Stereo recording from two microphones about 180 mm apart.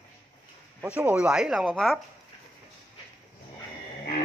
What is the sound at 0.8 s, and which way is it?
Speech, 10° right (ahead or behind).